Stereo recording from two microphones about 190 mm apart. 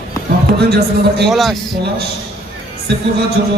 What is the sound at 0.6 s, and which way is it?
Speech, 60° right (ahead or behind).